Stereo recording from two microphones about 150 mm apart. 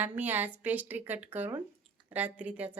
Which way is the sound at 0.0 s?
10° right (ahead or behind).